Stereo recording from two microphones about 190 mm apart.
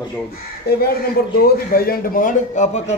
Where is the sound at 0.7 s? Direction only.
55° left (ahead or behind).